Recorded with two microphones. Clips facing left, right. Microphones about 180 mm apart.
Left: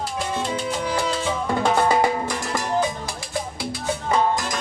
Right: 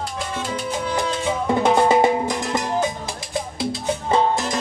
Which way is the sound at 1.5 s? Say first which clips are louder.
Right 4 dB; 20° right (ahead or behind).